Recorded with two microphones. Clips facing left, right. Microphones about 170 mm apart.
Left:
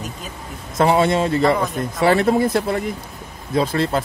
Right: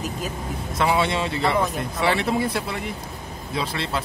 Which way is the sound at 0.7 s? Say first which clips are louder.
Left 6 dB; 45° left (ahead or behind).